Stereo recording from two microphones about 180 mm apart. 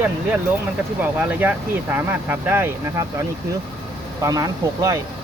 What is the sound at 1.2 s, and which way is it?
Speech, 10° right (ahead or behind).